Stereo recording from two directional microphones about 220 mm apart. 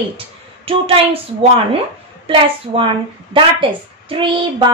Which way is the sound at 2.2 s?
25° right (ahead or behind).